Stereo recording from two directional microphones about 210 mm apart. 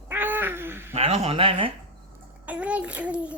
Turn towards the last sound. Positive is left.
turn(degrees=-5)  # may be behind; listen again after turning